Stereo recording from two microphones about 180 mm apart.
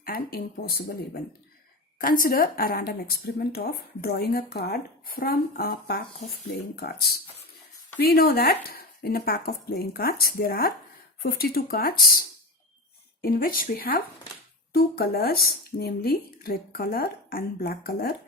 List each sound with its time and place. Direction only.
0.0 s speech: 55° left (ahead or behind)
2.0 s speech: 50° left (ahead or behind)
13.2 s speech: 50° left (ahead or behind)